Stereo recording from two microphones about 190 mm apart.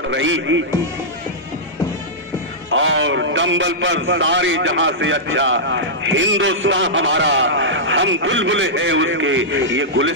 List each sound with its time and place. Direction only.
0.1 s a man's voice: 80° right
2.7 s a man's voice: 90° right